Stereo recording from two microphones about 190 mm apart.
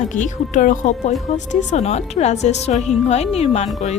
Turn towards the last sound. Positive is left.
turn(degrees=35)  # may be behind; listen again after turning